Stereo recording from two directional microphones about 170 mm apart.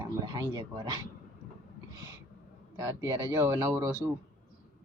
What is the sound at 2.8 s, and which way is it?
Speech, 15° right (ahead or behind).